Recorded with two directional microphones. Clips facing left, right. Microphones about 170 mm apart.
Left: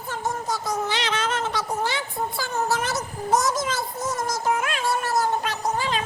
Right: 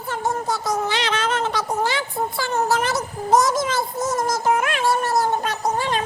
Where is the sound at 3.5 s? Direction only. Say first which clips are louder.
Right 4 dB; 50° right (ahead or behind).